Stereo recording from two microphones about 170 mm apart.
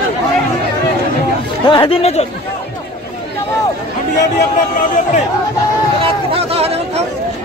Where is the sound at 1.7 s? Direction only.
30° left (ahead or behind).